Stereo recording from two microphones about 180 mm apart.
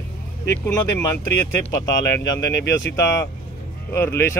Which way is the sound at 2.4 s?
80° left.